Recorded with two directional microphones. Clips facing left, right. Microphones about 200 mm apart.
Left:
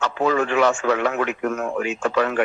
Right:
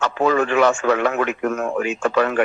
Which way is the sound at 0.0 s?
55° right (ahead or behind).